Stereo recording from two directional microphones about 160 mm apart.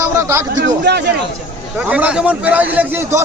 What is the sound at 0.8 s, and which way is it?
Speech, 90° right.